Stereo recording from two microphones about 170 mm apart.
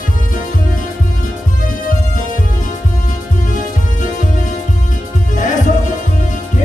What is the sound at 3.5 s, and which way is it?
Music, 50° left (ahead or behind).